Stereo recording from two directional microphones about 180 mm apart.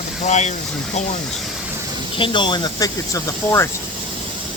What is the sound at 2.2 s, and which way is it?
Speech, 25° left (ahead or behind).